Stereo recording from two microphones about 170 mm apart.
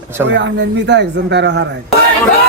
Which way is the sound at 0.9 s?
90° right.